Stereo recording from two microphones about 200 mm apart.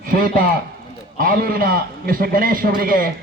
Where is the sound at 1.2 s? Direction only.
45° right (ahead or behind).